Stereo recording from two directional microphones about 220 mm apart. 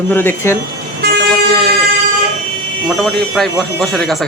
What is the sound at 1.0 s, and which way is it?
Vehicle, 50° right (ahead or behind).